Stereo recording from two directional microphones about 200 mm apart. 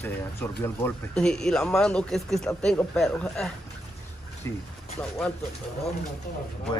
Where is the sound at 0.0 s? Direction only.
10° left (ahead or behind).